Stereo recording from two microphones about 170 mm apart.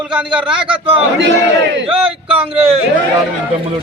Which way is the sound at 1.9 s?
35° right (ahead or behind).